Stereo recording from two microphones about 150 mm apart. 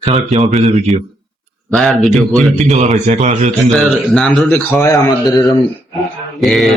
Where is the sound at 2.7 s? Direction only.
50° right (ahead or behind).